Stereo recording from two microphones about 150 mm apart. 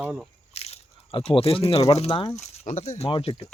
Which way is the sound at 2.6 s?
55° left (ahead or behind).